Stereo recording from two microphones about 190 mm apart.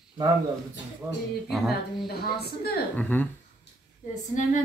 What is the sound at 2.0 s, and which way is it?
Speech, 55° left (ahead or behind).